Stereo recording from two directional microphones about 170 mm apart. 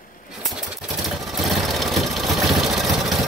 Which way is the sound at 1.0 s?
Centre (ahead or behind).